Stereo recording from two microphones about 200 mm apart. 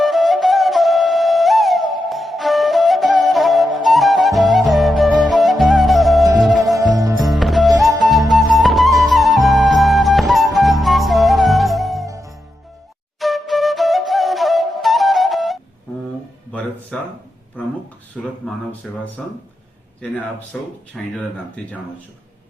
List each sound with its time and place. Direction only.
0.0 s flute: centre (ahead or behind)
6.4 s music: centre (ahead or behind)
6.9 s music: 15° right (ahead or behind)
7.2 s music: centre (ahead or behind)
12.0 s music: 15° right (ahead or behind)
13.1 s flute: centre (ahead or behind)
16.5 s music: 5° left (ahead or behind)
18.4 s speech: 5° left (ahead or behind)
20.5 s speech: centre (ahead or behind)